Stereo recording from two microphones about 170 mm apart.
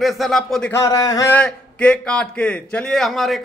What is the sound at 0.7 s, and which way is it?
Speech, 20° left (ahead or behind).